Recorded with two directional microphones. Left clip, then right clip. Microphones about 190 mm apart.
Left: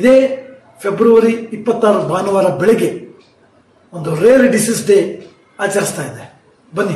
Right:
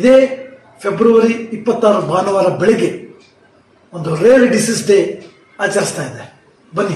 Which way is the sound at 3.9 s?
15° left (ahead or behind).